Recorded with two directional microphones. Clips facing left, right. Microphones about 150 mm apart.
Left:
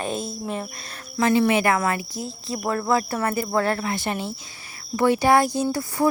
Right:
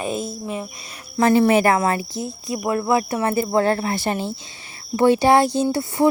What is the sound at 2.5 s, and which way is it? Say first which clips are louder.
Speech: right 3 dB; 15° right (ahead or behind).